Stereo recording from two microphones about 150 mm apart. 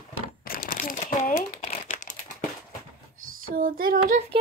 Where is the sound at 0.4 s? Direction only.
70° left (ahead or behind).